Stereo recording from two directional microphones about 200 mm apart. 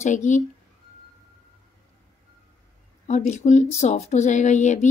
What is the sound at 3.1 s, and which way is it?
Speech, 35° left (ahead or behind).